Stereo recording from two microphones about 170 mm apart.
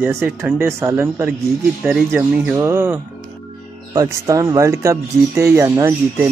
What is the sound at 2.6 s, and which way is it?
Speech, 15° right (ahead or behind).